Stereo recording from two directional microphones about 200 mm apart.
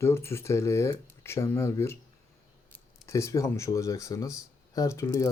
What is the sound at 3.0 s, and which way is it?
Speech, 15° left (ahead or behind).